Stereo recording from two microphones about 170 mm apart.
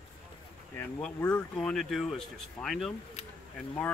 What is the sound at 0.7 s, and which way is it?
Speech, 10° left (ahead or behind).